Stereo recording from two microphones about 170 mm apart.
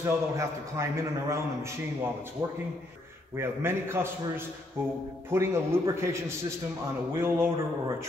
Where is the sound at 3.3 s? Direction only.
15° right (ahead or behind).